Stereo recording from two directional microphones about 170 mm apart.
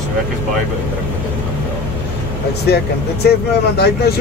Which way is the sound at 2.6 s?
70° left (ahead or behind).